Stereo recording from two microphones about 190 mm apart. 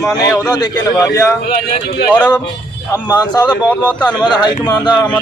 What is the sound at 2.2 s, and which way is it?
Speech, 10° left (ahead or behind).